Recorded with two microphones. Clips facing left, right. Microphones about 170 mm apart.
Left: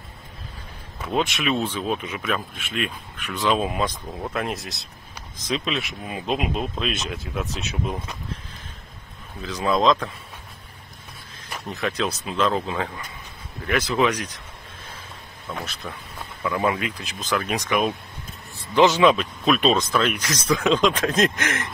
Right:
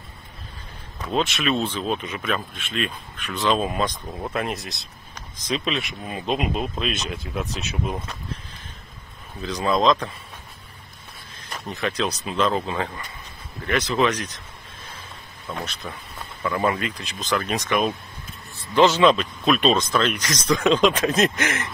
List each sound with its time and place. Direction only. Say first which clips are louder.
1.0 s speech: even; 15° left (ahead or behind)
9.4 s speech: even; 5° left (ahead or behind)
11.5 s speech: even; centre (ahead or behind)
15.5 s speech: right 1 dB; centre (ahead or behind)